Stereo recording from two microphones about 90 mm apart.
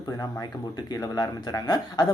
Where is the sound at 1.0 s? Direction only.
45° left (ahead or behind).